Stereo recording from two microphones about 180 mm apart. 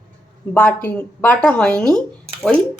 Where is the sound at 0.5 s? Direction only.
10° left (ahead or behind).